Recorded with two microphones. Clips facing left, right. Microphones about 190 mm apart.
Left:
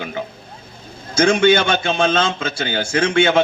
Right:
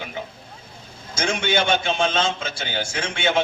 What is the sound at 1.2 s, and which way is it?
A man's voice, 60° left (ahead or behind).